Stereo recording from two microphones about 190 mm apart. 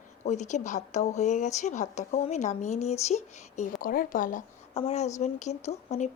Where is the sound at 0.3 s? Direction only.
40° left (ahead or behind).